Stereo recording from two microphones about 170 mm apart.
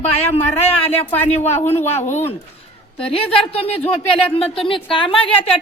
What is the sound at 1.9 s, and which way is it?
Speech, 45° left (ahead or behind).